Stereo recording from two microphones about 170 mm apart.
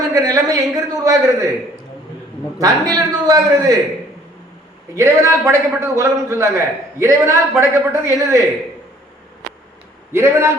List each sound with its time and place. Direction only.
0.1 s a man's voice: 20° right (ahead or behind)
2.6 s a man's voice: 20° right (ahead or behind)
4.9 s a man's voice: 15° right (ahead or behind)
10.1 s a man's voice: 15° right (ahead or behind)